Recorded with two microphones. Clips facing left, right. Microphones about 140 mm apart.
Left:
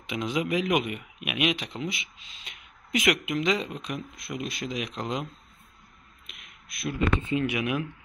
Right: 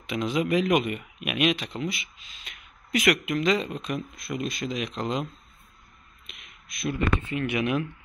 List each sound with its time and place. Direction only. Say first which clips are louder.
0.0 s speech: right 2 dB; 15° left (ahead or behind)
6.2 s a sound: right 1 dB; 5° left (ahead or behind)
7.0 s speech: left 3 dB; 20° left (ahead or behind)
7.5 s speech: right 3 dB; 10° left (ahead or behind)